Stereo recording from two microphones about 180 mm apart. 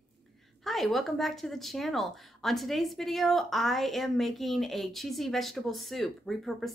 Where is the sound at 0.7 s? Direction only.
Centre (ahead or behind).